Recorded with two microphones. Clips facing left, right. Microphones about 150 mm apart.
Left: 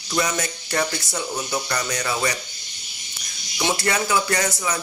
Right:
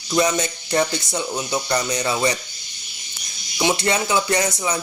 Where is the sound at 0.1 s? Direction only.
20° right (ahead or behind).